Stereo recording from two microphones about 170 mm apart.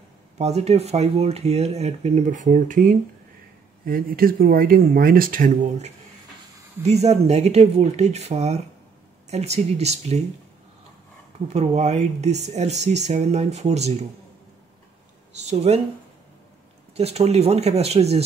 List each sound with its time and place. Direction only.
0.4 s speech: 40° right (ahead or behind)
3.8 s speech: 60° right (ahead or behind)
6.8 s speech: 40° right (ahead or behind)
11.4 s speech: 40° right (ahead or behind)
15.4 s speech: 40° right (ahead or behind)
16.9 s speech: 40° right (ahead or behind)